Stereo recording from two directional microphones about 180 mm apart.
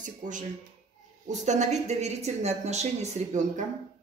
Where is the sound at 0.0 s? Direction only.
45° right (ahead or behind).